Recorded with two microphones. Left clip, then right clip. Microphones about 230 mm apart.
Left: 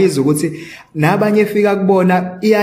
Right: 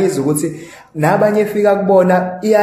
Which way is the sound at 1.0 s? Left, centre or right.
Left.